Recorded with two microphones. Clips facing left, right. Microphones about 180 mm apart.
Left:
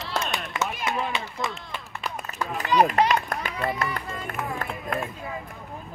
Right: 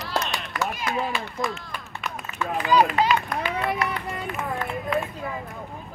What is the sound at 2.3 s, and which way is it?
Run, 40° left (ahead or behind).